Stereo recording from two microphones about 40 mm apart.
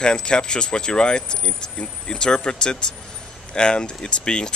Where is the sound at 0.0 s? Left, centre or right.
Left.